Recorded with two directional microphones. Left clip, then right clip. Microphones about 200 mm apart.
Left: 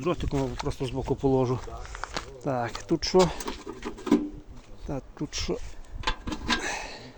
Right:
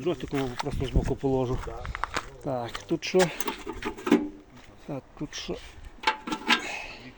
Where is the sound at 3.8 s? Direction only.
15° right (ahead or behind).